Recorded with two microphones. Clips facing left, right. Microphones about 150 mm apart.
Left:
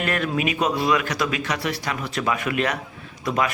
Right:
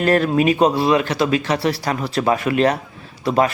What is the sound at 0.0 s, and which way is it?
Speech, 35° right (ahead or behind).